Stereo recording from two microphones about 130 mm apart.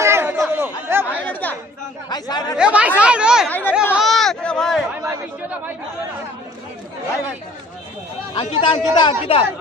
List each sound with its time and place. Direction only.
0.0 s chatter: 20° right (ahead or behind)
1.2 s chatter: 15° left (ahead or behind)
2.0 s chatter: 30° left (ahead or behind)
2.5 s speech: 10° right (ahead or behind)
3.4 s speech: 10° left (ahead or behind)
3.9 s a sound: centre (ahead or behind)
8.4 s speech: 40° left (ahead or behind)